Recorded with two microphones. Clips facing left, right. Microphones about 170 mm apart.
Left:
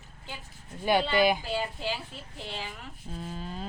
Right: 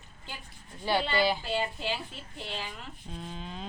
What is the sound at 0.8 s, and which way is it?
Speech, 15° left (ahead or behind).